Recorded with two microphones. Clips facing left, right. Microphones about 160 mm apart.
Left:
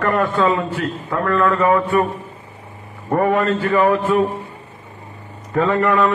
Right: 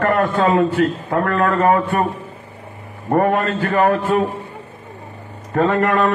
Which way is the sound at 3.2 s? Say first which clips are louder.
Left 1 dB; 55° right (ahead or behind).